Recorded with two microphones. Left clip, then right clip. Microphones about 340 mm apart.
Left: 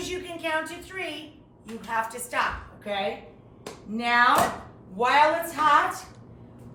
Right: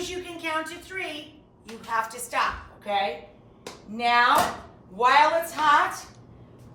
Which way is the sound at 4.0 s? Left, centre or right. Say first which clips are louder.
Right 1 dB; centre.